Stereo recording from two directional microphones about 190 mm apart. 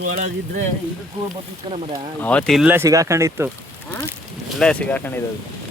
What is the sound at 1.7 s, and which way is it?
Speech, 30° right (ahead or behind).